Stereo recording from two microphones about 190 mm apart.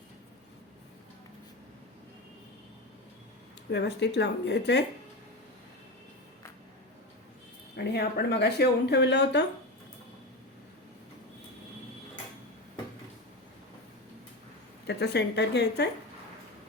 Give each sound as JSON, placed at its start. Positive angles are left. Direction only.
{"t": 3.7, "sound": "speech", "side_deg": 65}
{"t": 7.8, "sound": "speech", "side_deg": 60}
{"t": 14.8, "sound": "speech", "side_deg": 60}